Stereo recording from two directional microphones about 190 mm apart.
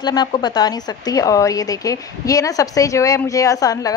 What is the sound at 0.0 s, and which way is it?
A woman's voice, 25° left (ahead or behind).